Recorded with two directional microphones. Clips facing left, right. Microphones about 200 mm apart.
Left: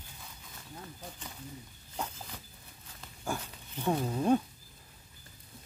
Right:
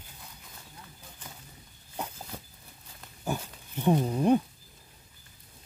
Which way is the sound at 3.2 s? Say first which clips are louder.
Right 3 dB; 15° right (ahead or behind).